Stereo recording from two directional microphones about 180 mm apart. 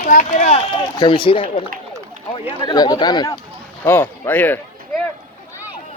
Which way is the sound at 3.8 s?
10° left (ahead or behind).